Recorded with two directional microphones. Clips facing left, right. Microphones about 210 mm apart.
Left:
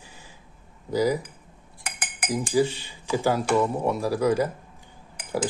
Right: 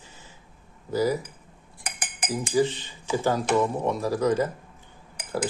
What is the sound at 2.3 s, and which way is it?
Speech, 10° left (ahead or behind).